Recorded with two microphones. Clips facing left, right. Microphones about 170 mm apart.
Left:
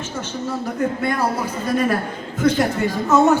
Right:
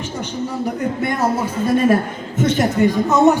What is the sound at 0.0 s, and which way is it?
Speech, 15° right (ahead or behind).